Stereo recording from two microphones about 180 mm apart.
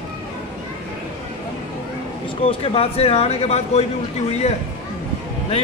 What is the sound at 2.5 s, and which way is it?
Speech, 35° left (ahead or behind).